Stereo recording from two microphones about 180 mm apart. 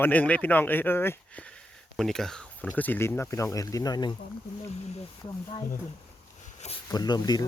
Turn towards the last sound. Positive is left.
turn(degrees=20)  # may be behind; listen again after turning